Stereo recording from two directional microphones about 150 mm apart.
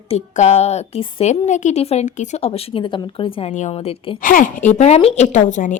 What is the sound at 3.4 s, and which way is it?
Speech, 50° left (ahead or behind).